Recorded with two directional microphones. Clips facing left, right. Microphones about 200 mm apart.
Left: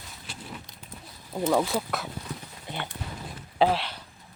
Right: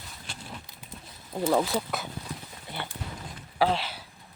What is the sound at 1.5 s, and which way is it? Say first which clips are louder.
Speech: even; centre (ahead or behind).